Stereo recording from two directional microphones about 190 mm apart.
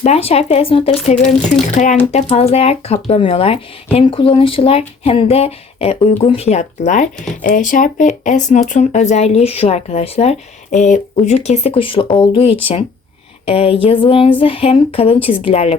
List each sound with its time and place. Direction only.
0.0 s speech: 30° left (ahead or behind)